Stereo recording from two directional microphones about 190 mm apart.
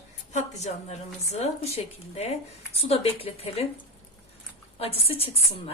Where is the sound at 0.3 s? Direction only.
35° left (ahead or behind).